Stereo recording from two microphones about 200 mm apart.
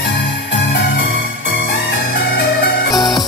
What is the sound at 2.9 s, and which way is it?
Music, 20° left (ahead or behind).